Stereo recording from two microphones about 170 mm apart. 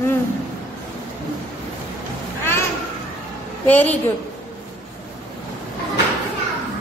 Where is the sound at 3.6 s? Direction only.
10° left (ahead or behind).